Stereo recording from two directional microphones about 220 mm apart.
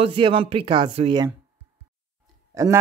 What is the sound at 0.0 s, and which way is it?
Speech, 25° right (ahead or behind).